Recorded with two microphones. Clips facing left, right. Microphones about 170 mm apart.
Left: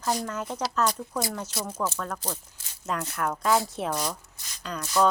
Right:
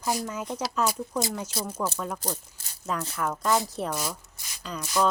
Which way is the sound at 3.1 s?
Centre (ahead or behind).